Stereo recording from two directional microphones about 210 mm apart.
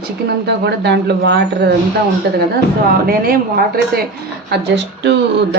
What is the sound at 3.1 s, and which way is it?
A woman's voice, 45° right (ahead or behind).